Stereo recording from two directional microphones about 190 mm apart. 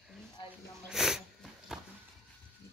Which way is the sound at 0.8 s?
Centre (ahead or behind).